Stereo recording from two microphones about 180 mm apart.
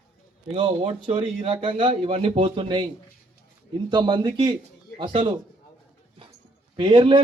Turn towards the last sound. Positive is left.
turn(degrees=-30)  # may be behind; listen again after turning